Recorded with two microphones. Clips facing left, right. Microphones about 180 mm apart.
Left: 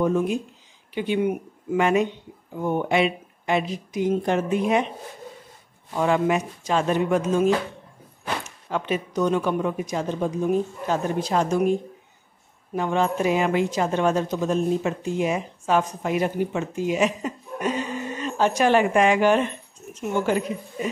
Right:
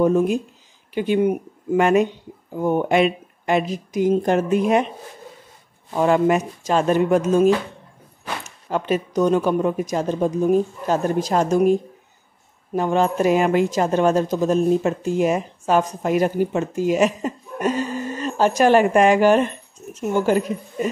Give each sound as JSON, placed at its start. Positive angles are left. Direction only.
{"t": 0.0, "sound": "a woman's voice", "side_deg": -40}
{"t": 5.9, "sound": "a woman's voice", "side_deg": -45}
{"t": 8.6, "sound": "speech", "side_deg": -40}
{"t": 12.7, "sound": "a woman's voice", "side_deg": -40}